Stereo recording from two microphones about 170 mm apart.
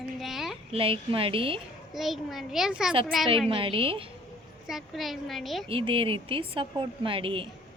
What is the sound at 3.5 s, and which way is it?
Speech, 30° right (ahead or behind).